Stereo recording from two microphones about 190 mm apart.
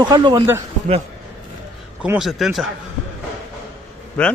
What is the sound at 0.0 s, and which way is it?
Speech, 20° right (ahead or behind).